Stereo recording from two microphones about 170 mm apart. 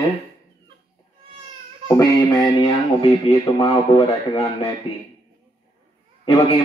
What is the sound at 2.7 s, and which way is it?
A man's voice, 35° left (ahead or behind).